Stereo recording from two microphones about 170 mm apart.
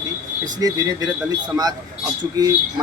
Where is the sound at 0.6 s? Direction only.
20° right (ahead or behind).